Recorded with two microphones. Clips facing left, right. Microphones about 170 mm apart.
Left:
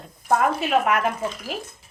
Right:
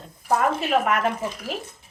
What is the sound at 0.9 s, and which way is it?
Speech, centre (ahead or behind).